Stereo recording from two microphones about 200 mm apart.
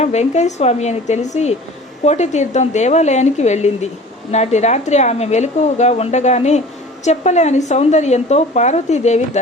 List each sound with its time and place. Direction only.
0.0 s speech: 35° left (ahead or behind)